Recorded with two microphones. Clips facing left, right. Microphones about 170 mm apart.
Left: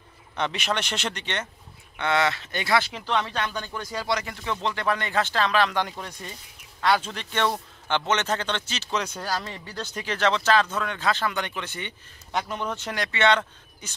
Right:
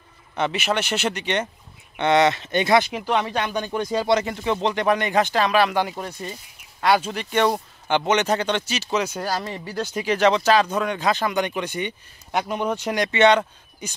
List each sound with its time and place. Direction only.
0.4 s a man's voice: 5° right (ahead or behind)